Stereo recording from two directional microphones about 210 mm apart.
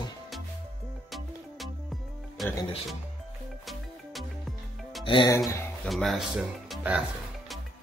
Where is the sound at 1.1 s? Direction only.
Centre (ahead or behind).